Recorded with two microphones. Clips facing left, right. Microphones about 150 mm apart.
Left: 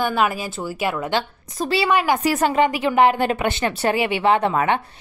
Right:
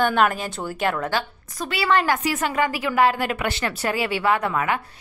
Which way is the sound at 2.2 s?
40° left (ahead or behind).